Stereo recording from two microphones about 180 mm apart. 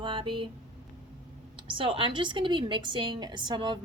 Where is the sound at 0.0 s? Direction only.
25° right (ahead or behind).